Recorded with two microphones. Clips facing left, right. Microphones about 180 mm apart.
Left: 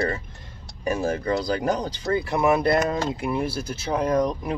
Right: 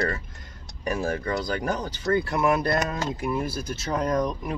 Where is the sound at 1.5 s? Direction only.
35° left (ahead or behind).